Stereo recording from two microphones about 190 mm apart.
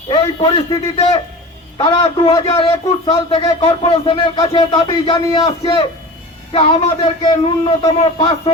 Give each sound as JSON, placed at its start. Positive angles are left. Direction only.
{"t": 0.1, "sound": "a man's voice", "side_deg": 30}